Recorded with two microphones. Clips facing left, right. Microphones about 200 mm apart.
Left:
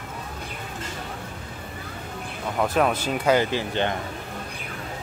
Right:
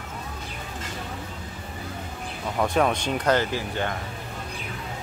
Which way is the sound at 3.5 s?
25° left (ahead or behind).